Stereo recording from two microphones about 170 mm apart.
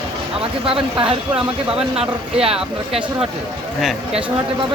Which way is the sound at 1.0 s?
30° right (ahead or behind).